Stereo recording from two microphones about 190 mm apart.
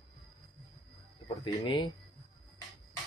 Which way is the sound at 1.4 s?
25° left (ahead or behind).